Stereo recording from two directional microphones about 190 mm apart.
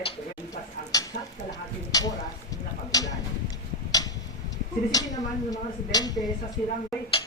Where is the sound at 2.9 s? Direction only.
20° left (ahead or behind).